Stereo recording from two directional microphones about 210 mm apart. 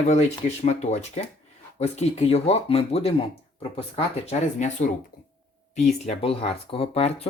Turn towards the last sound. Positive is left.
turn(degrees=30)  # may be behind; listen again after turning